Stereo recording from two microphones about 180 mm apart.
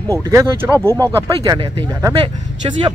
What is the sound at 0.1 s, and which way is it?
Speech, 15° right (ahead or behind).